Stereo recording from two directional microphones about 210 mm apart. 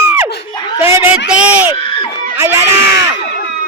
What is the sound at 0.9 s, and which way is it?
Speech, 10° right (ahead or behind).